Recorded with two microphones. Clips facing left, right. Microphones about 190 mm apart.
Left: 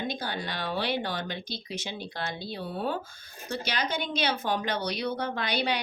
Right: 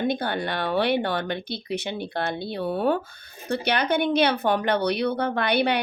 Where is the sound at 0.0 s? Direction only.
60° right (ahead or behind).